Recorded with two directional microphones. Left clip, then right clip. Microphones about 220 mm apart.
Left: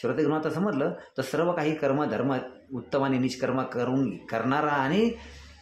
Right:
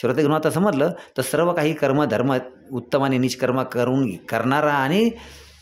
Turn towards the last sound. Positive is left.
turn(degrees=-45)  # may be behind; listen again after turning